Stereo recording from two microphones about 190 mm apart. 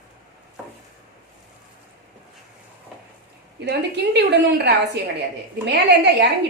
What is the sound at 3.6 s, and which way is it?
A woman's voice, 60° right (ahead or behind).